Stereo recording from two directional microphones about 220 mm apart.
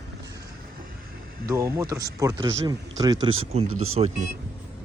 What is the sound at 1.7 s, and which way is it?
A man's voice, 15° right (ahead or behind).